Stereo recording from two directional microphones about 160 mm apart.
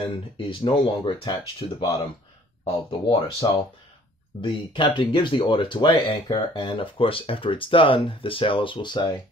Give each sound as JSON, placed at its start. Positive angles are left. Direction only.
{"t": 0.4, "sound": "speech", "side_deg": 30}